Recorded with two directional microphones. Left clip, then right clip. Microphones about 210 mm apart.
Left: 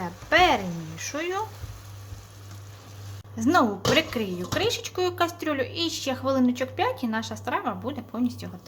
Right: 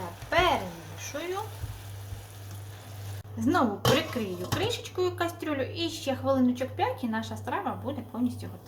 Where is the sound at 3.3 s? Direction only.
40° left (ahead or behind).